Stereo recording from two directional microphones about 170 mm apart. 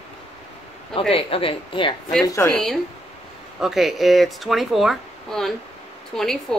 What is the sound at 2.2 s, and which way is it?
Speech, 15° left (ahead or behind).